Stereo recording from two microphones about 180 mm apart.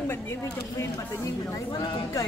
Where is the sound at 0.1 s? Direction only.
15° left (ahead or behind).